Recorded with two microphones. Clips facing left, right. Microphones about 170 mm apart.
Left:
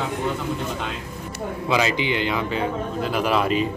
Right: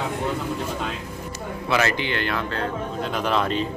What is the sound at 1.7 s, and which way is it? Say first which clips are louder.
A man's voice: left 1 dB; 15° left (ahead or behind).